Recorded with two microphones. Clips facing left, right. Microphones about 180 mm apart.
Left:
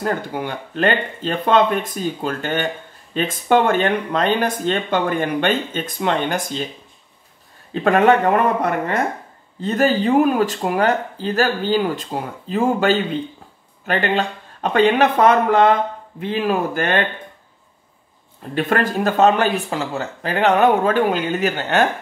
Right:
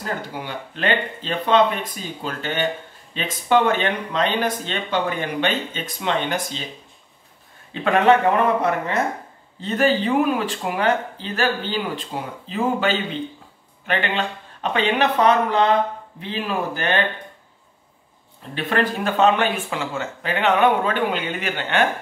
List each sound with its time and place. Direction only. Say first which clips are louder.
0.0 s speech: left 6 dB; 50° left (ahead or behind)
7.7 s speech: left 3 dB; 40° left (ahead or behind)
9.6 s speech: left 2 dB; 40° left (ahead or behind)
18.5 s speech: left 3 dB; 45° left (ahead or behind)